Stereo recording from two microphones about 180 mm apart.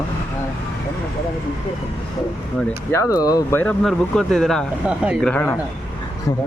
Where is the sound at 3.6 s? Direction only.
5° left (ahead or behind).